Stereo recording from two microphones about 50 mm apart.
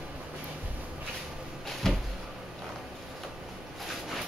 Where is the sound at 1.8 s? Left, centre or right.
Centre.